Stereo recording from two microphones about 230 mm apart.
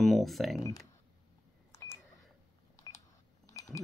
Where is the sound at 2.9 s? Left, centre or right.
Centre.